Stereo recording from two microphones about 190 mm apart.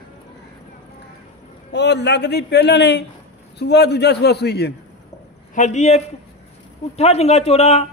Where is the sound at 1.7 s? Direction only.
60° left (ahead or behind).